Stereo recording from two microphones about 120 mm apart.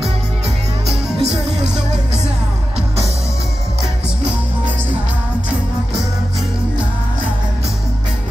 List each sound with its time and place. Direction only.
1.1 s music: 50° right (ahead or behind)